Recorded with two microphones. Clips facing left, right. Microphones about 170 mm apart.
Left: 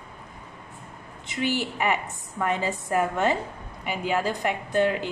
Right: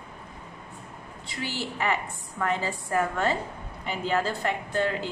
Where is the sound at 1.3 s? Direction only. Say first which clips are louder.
Left 6 dB; 20° left (ahead or behind).